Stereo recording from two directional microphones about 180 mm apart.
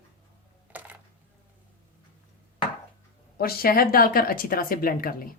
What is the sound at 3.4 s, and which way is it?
Speech, 55° left (ahead or behind).